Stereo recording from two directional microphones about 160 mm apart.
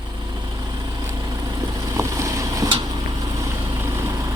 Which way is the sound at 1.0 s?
20° right (ahead or behind).